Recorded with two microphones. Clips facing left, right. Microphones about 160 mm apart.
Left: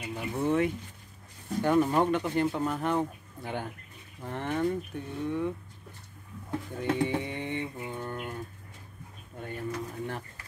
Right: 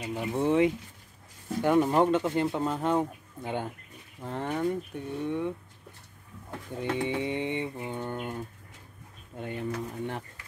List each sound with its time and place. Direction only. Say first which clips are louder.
0.0 s speech: right 2 dB; 20° right (ahead or behind)
6.8 s speech: even; 20° right (ahead or behind)
9.4 s speech: right 2 dB; 20° right (ahead or behind)